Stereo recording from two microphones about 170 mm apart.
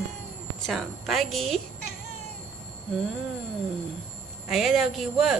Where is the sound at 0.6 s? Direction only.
Centre (ahead or behind).